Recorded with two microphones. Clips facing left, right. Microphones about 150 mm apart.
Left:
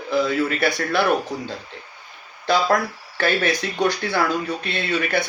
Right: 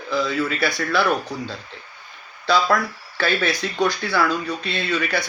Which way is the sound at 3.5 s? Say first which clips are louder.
Left 1 dB; 20° left (ahead or behind).